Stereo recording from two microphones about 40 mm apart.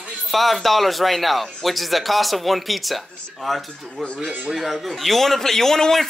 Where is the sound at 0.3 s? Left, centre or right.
Centre.